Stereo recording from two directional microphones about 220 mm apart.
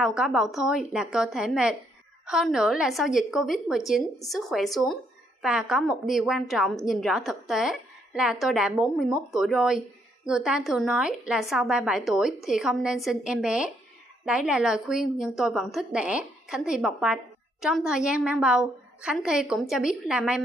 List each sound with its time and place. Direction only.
0.0 s a woman's voice: centre (ahead or behind)